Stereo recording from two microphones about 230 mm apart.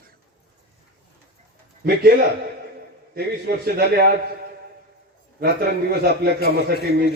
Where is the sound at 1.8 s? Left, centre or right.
Right.